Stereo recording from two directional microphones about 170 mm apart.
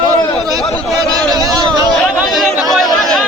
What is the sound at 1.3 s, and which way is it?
Speech, 25° right (ahead or behind).